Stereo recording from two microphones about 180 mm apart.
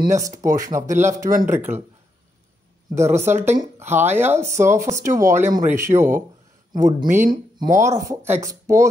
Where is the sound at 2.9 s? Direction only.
15° right (ahead or behind).